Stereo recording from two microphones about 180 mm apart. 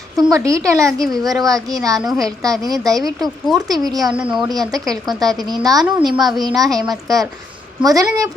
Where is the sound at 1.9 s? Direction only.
Centre (ahead or behind).